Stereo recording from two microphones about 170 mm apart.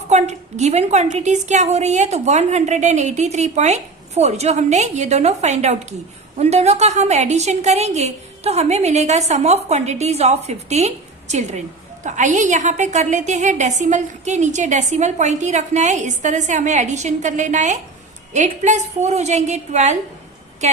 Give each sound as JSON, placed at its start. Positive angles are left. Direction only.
{"t": 0.1, "sound": "a woman's voice", "side_deg": -40}